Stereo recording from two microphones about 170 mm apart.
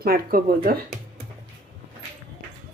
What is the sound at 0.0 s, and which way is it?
Speech, 60° right (ahead or behind).